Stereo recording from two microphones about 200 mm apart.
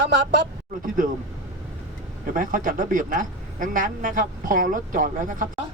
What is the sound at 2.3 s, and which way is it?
A man's voice, 40° right (ahead or behind).